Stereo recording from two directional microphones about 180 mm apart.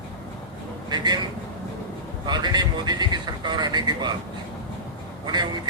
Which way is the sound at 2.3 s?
25° right (ahead or behind).